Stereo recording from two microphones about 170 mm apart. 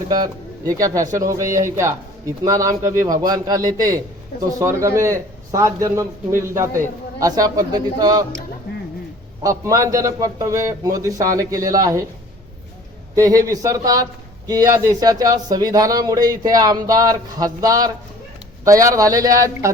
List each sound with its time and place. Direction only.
0.7 s a man's voice: 20° right (ahead or behind)
9.4 s speech: 20° right (ahead or behind)
13.1 s speech: 20° right (ahead or behind)